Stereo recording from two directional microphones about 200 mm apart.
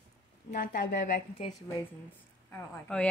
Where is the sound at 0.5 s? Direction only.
40° left (ahead or behind).